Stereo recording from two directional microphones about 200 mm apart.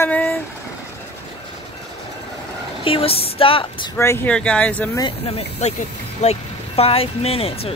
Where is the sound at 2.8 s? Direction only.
30° left (ahead or behind).